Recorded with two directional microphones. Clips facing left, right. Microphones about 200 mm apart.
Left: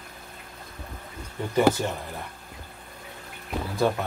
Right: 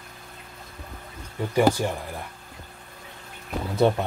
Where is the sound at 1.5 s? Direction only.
10° right (ahead or behind).